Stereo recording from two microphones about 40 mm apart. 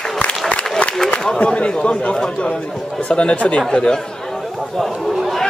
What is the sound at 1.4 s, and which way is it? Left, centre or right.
Speech, left.